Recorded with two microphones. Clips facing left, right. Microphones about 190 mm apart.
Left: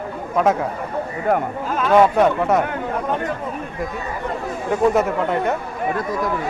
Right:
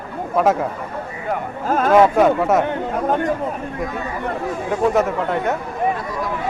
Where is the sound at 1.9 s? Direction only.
5° right (ahead or behind).